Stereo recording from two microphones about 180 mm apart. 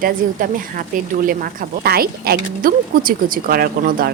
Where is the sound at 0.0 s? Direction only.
55° right (ahead or behind).